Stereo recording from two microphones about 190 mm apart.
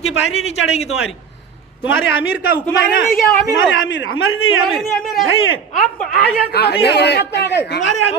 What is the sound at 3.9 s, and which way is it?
Speech, 80° left.